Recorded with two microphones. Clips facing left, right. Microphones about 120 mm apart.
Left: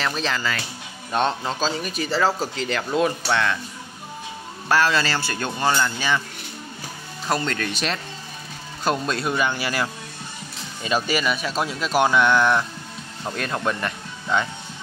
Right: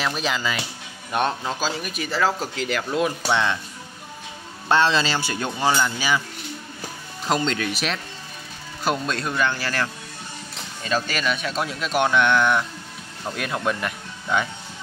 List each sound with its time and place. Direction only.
0.0 s speech: 15° right (ahead or behind)
4.6 s speech: 25° right (ahead or behind)
7.2 s a man's voice: 15° right (ahead or behind)